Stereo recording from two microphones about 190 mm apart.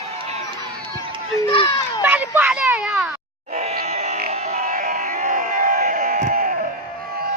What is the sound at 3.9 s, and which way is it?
Music, 35° right (ahead or behind).